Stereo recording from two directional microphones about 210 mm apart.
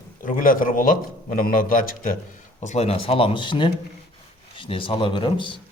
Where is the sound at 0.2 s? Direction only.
40° left (ahead or behind); by 5.5 s 25° left (ahead or behind).